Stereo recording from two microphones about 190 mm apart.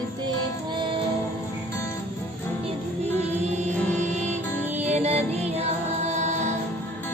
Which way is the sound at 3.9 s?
40° right (ahead or behind).